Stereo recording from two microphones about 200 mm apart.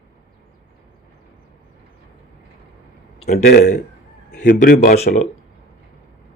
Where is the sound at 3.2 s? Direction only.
35° left (ahead or behind).